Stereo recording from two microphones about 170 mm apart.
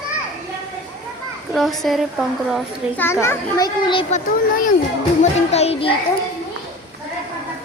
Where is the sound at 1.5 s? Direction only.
Centre (ahead or behind).